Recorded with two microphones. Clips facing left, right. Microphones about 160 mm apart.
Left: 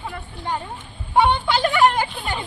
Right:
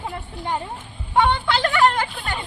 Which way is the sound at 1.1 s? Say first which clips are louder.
Left 1 dB; 15° left (ahead or behind).